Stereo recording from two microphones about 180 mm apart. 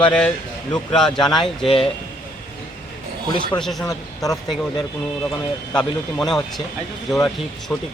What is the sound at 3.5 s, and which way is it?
Speech, 5° left (ahead or behind).